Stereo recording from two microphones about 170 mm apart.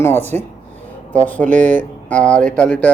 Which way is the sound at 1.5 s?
45° right (ahead or behind).